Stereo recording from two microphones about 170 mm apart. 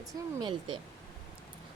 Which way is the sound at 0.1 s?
25° right (ahead or behind).